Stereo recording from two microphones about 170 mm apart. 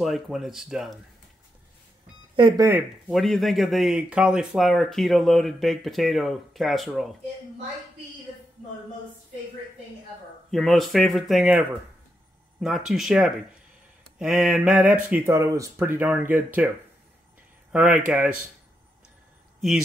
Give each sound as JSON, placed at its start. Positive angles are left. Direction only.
{"t": 0.0, "sound": "speech", "side_deg": 0}
{"t": 2.3, "sound": "speech", "side_deg": -30}
{"t": 3.1, "sound": "speech", "side_deg": 0}
{"t": 10.5, "sound": "speech", "side_deg": 0}
{"t": 14.4, "sound": "speech", "side_deg": -10}
{"t": 17.7, "sound": "speech", "side_deg": -10}